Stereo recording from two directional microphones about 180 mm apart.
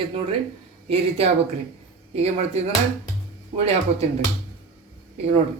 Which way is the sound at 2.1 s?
35° right (ahead or behind).